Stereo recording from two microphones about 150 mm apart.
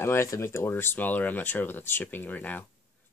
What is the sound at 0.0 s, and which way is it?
Speech, 20° left (ahead or behind).